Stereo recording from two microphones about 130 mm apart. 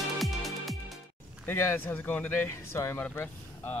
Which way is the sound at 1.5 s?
20° left (ahead or behind).